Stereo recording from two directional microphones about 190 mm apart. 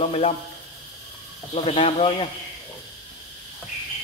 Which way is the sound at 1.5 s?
30° left (ahead or behind).